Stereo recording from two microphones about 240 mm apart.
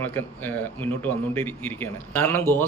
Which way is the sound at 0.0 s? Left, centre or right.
Centre.